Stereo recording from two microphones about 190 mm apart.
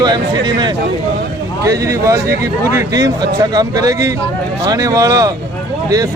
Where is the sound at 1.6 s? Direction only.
15° right (ahead or behind).